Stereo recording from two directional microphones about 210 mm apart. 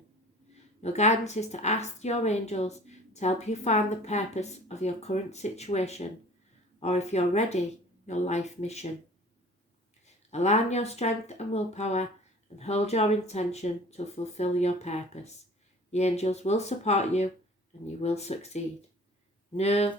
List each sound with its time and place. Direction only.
0.8 s speech: 30° left (ahead or behind)
10.3 s speech: 30° left (ahead or behind)